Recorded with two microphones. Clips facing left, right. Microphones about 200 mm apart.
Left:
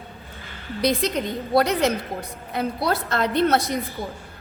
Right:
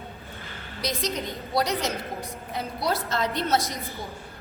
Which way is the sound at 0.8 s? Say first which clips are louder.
Left 7 dB; 60° left (ahead or behind).